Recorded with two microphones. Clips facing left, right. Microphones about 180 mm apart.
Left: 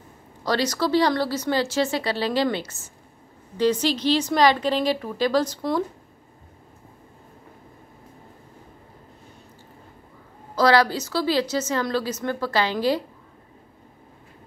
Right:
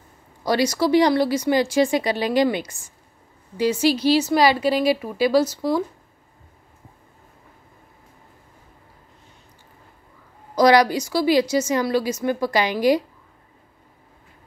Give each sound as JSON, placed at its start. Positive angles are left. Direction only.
{"t": 0.5, "sound": "a woman's voice", "side_deg": -10}
{"t": 10.5, "sound": "a woman's voice", "side_deg": -15}